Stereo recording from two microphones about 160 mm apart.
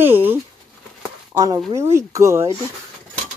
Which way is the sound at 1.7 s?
15° right (ahead or behind).